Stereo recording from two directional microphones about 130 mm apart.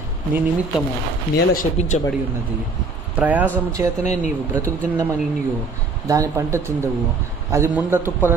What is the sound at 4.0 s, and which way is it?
Speech, 65° left (ahead or behind).